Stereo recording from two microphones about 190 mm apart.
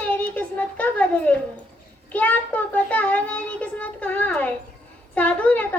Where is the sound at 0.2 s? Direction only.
10° left (ahead or behind).